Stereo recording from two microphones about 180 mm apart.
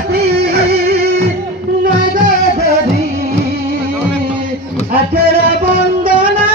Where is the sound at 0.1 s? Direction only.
65° right (ahead or behind).